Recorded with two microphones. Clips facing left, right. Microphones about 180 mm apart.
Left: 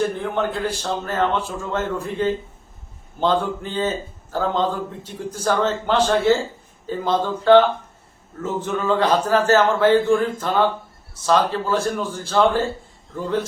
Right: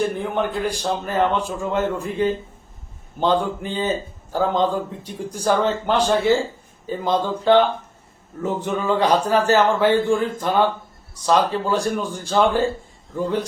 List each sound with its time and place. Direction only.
0.3 s a man's voice: 15° right (ahead or behind)